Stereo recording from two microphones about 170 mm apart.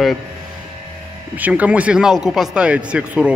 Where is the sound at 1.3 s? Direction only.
10° right (ahead or behind).